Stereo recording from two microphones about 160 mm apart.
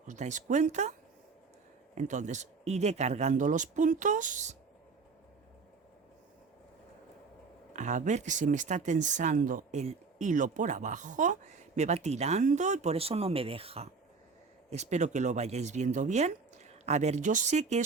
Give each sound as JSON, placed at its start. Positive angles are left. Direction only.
{"t": 0.1, "sound": "speech", "side_deg": -50}
{"t": 2.0, "sound": "speech", "side_deg": -50}
{"t": 7.7, "sound": "speech", "side_deg": -50}